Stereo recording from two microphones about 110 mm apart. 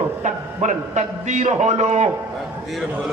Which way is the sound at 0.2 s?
90° right.